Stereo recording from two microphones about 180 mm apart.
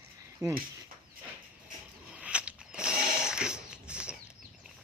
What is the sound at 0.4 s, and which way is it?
Speech, 20° right (ahead or behind).